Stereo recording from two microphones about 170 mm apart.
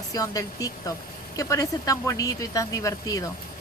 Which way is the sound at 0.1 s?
20° left (ahead or behind).